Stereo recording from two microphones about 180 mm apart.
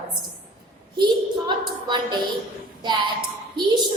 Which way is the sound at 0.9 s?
25° right (ahead or behind).